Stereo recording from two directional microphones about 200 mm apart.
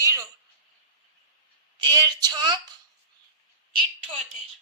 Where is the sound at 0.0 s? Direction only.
15° right (ahead or behind).